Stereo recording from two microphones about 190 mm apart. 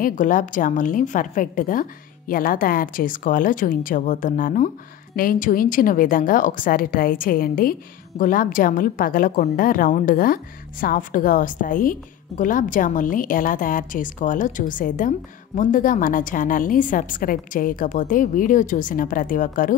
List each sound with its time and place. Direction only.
0.0 s a woman's voice: 45° left (ahead or behind)